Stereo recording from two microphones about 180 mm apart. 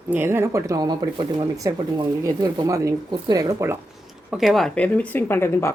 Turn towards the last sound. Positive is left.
turn(degrees=15)  # may be behind; listen again after turning